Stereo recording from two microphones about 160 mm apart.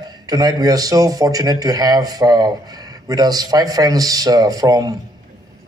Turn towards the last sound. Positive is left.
turn(degrees=-20)  # may be behind; listen again after turning